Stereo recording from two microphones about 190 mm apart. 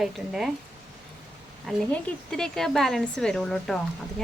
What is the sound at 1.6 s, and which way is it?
Speech, 5° left (ahead or behind).